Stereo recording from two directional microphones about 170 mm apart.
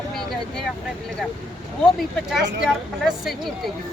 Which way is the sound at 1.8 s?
Centre (ahead or behind).